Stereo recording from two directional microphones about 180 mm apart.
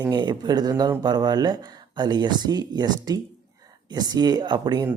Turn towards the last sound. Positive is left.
turn(degrees=-25)  # may be behind; listen again after turning